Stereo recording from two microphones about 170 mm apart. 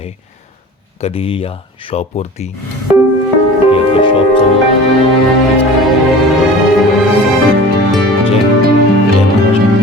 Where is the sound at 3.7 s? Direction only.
30° left (ahead or behind).